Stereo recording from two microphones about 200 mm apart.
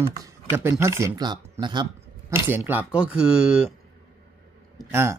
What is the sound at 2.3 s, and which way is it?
Speech, 10° right (ahead or behind).